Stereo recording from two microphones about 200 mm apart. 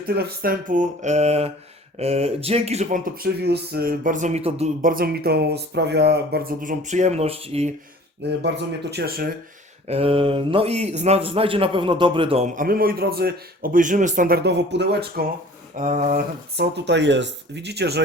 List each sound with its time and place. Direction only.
0.1 s speech: 50° right (ahead or behind); by 3.0 s 30° right (ahead or behind)
3.2 s speech: 55° right (ahead or behind); by 4.7 s 30° right (ahead or behind)
4.8 s speech: 45° right (ahead or behind); by 7.7 s 30° right (ahead or behind)
8.2 s speech: 60° right (ahead or behind)
9.8 s speech: 30° right (ahead or behind)
12.5 s speech: 45° right (ahead or behind)
15.8 s speech: 40° right (ahead or behind)
16.6 s speech: 60° right (ahead or behind)